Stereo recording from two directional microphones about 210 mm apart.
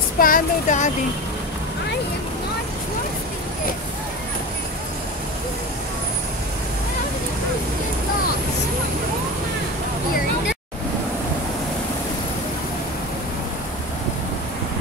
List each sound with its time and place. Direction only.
0.2 s speech: 40° left (ahead or behind)